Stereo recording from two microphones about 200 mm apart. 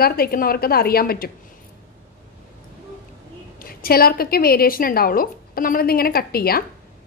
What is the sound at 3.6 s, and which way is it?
A woman's voice, 45° left (ahead or behind).